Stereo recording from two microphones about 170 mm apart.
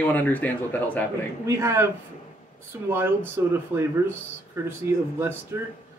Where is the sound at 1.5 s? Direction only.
15° right (ahead or behind).